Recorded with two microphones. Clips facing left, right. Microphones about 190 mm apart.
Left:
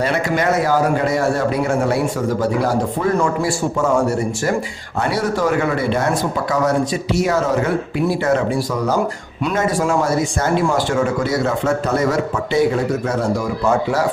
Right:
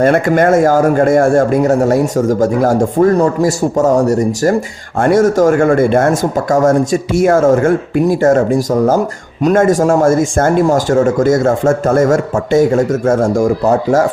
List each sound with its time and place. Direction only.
0.0 s speech: 50° right (ahead or behind)